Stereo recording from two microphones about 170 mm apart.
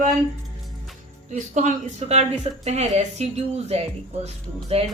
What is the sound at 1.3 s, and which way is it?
Speech, 45° right (ahead or behind).